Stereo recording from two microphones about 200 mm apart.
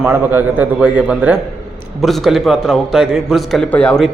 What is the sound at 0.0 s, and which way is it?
A man's voice, 10° right (ahead or behind).